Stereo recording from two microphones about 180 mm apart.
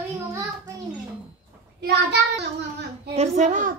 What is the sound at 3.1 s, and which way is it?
Speech, 40° right (ahead or behind).